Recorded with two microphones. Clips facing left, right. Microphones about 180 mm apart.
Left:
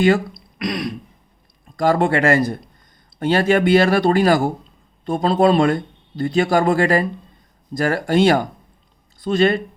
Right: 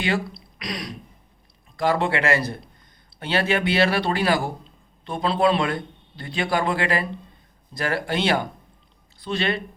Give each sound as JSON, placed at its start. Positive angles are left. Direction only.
{"t": 0.0, "sound": "speech", "side_deg": 50}